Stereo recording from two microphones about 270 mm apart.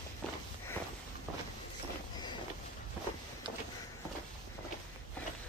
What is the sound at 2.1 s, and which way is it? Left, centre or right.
Vehicle, centre.